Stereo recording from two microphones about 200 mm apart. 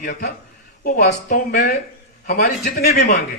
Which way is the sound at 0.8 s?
40° left (ahead or behind).